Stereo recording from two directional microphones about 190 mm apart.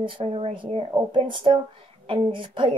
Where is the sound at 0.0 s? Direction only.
30° right (ahead or behind).